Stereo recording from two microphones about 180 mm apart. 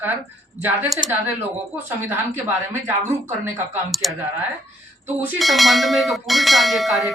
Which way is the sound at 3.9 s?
Centre (ahead or behind).